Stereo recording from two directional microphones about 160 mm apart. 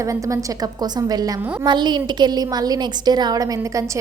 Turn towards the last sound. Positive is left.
turn(degrees=-20)  # may be behind; listen again after turning